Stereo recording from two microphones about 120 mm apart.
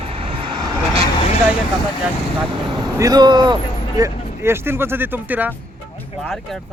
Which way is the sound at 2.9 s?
30° right (ahead or behind).